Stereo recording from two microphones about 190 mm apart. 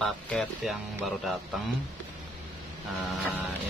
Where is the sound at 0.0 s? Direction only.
5° left (ahead or behind).